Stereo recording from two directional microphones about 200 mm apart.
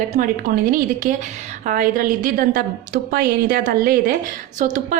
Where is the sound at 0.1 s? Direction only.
40° right (ahead or behind).